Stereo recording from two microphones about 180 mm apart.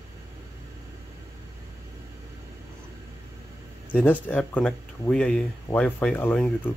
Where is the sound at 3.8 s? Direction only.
10° left (ahead or behind).